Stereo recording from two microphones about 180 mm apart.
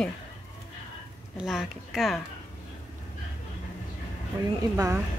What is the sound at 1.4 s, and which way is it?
Speech, centre (ahead or behind).